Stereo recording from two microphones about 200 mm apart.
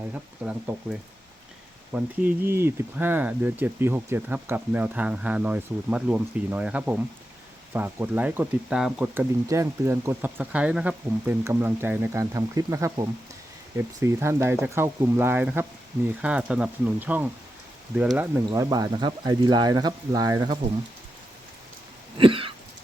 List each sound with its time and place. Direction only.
0.1 s speech: 10° right (ahead or behind)
22.2 s throat clearing: 25° right (ahead or behind)